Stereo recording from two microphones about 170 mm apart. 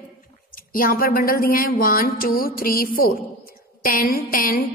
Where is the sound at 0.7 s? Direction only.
55° left (ahead or behind).